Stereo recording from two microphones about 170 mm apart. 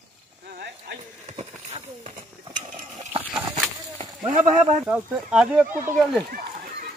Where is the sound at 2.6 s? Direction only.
40° right (ahead or behind).